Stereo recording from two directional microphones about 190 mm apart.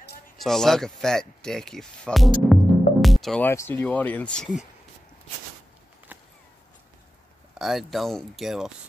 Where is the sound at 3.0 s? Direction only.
Centre (ahead or behind).